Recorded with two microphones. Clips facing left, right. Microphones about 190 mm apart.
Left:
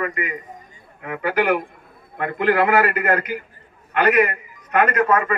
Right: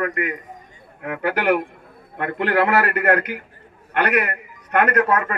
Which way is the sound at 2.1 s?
60° right (ahead or behind).